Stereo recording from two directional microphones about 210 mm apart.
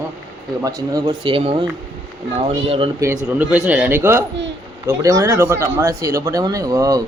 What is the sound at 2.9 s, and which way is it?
Speech, 15° right (ahead or behind).